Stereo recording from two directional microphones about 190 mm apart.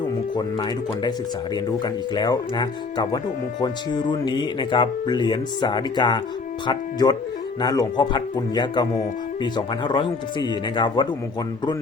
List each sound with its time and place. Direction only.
0.3 s speech: 20° left (ahead or behind)